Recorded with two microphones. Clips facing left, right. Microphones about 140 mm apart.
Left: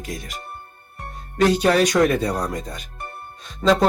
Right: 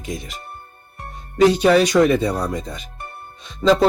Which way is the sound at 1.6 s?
5° right (ahead or behind).